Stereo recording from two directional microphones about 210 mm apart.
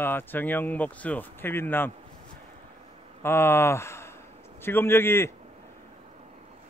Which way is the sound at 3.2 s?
10° left (ahead or behind).